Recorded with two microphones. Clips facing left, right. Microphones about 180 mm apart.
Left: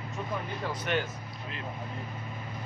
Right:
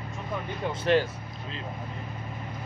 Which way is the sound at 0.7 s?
30° right (ahead or behind).